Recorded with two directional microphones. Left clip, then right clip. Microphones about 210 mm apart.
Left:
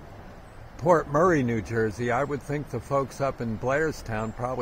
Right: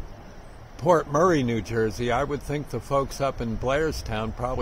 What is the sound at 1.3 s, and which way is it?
Speech, 20° right (ahead or behind).